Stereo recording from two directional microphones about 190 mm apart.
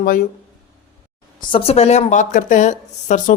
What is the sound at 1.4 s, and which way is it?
A woman's voice, 30° left (ahead or behind).